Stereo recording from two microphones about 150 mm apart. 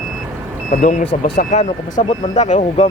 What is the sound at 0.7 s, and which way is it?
Speech, 60° left (ahead or behind).